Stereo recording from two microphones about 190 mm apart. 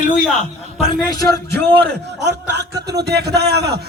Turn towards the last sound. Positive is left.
turn(degrees=-60)  # may be behind; listen again after turning